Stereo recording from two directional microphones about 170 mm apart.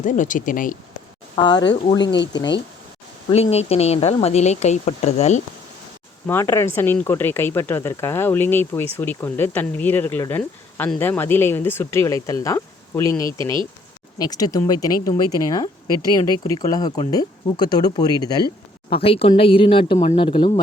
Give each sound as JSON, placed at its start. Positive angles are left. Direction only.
{"t": 0.0, "sound": "speech", "side_deg": 50}
{"t": 1.4, "sound": "speech", "side_deg": 25}
{"t": 3.2, "sound": "speech", "side_deg": 35}
{"t": 6.2, "sound": "speech", "side_deg": 15}
{"t": 13.4, "sound": "speech", "side_deg": -30}
{"t": 14.2, "sound": "speech", "side_deg": 25}